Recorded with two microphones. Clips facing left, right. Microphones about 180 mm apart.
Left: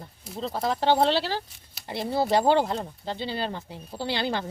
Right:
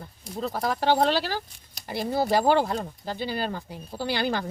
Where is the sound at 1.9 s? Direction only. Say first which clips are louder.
Even; 25° left (ahead or behind).